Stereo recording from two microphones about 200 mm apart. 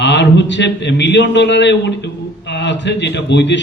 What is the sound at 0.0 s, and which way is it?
A man's voice, 60° left (ahead or behind).